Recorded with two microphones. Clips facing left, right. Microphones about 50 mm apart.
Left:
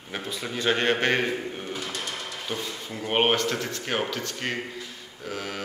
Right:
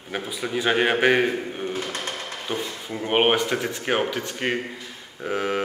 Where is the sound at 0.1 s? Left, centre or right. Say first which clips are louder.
Right 5 dB; centre.